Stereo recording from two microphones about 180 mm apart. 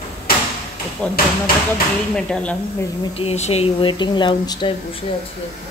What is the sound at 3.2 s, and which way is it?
Speech, 35° left (ahead or behind).